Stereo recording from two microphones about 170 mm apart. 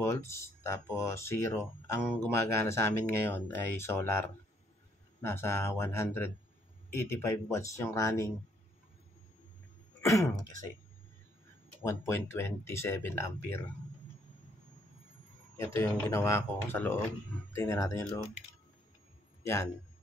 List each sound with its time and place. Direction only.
0.0 s speech: 15° left (ahead or behind)
9.9 s speech: 15° left (ahead or behind)
12.0 s speech: 15° left (ahead or behind)
15.5 s speech: 15° left (ahead or behind)
19.4 s a man's voice: 15° left (ahead or behind)